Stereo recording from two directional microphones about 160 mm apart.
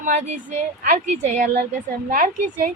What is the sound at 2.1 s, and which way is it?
Speech, 60° right (ahead or behind).